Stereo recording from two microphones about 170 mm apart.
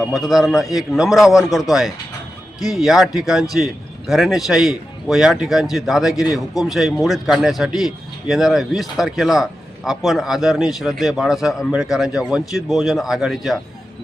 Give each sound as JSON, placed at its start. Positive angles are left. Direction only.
{"t": 0.3, "sound": "a man's voice", "side_deg": 0}